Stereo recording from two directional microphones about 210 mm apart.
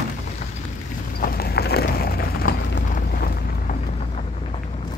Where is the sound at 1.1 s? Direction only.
45° left (ahead or behind).